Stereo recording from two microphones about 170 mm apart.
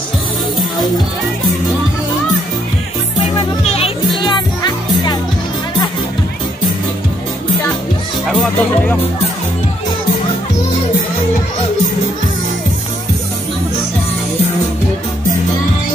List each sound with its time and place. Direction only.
3.6 s music: 35° left (ahead or behind)
8.3 s speech: centre (ahead or behind)